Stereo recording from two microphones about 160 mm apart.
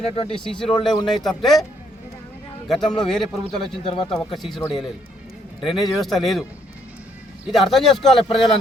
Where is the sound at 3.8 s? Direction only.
35° left (ahead or behind).